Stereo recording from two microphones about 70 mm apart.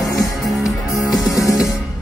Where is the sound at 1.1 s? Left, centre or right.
Left.